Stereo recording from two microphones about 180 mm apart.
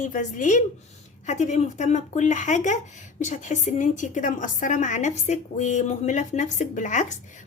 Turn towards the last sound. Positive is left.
turn(degrees=40)  # may be behind; listen again after turning